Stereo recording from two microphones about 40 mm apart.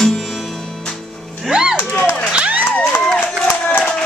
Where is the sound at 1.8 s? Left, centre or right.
Left.